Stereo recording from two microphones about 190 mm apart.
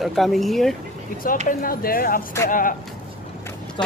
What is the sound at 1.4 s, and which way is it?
Speech, 50° left (ahead or behind).